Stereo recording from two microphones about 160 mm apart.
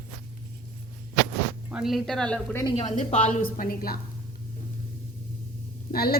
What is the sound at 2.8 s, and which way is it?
Speech, 50° left (ahead or behind).